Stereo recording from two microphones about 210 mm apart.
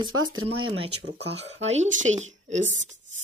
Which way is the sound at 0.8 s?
55° right (ahead or behind).